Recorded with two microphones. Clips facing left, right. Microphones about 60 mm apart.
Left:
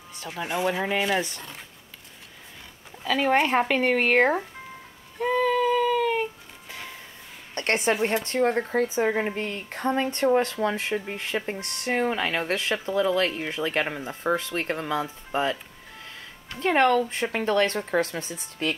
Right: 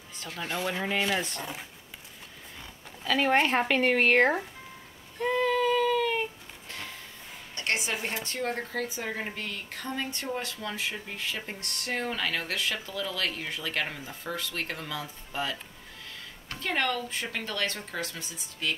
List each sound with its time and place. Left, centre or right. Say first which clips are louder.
0.1 s speech: left 5 dB; centre
3.0 s speech: left 2 dB; centre
5.2 s child singing: left 3 dB; centre
7.5 s speech: left 7 dB; left
16.5 s speech: left 9 dB; left